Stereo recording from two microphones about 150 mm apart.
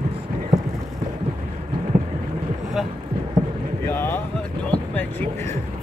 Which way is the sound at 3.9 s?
15° left (ahead or behind).